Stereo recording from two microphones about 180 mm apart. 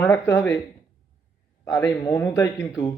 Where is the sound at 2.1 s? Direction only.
10° left (ahead or behind).